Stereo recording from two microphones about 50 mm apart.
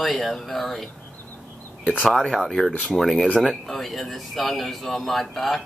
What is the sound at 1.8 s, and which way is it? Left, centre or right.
Speech, right.